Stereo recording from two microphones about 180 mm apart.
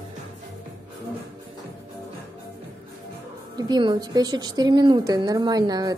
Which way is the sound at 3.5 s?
25° right (ahead or behind).